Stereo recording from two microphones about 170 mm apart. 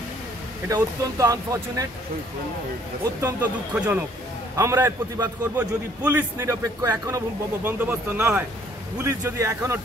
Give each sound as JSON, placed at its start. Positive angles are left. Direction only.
{"t": 0.7, "sound": "speech", "side_deg": -20}
{"t": 3.2, "sound": "a man's voice", "side_deg": -15}